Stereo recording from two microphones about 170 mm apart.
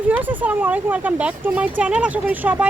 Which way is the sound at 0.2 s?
10° right (ahead or behind).